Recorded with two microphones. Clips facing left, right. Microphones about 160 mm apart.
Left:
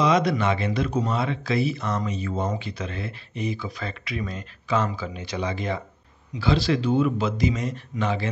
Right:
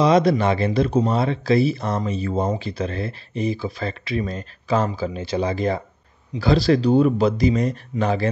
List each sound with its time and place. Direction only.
0.0 s speech: 35° right (ahead or behind)